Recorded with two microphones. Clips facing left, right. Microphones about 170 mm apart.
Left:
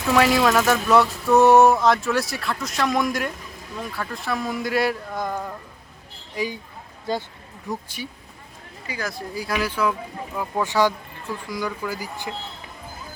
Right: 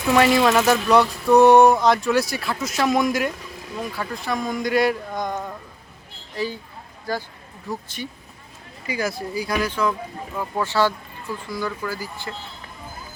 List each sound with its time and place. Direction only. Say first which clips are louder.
0.1 s speech: right 1 dB; centre (ahead or behind)
6.3 s speech: even; 15° left (ahead or behind)
7.7 s speech: even; 10° left (ahead or behind)
8.9 s speech: right 5 dB; 10° right (ahead or behind); by 12.3 s 15° left (ahead or behind)